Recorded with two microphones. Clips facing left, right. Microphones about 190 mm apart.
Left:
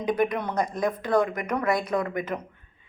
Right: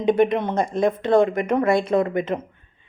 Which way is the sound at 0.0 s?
25° right (ahead or behind).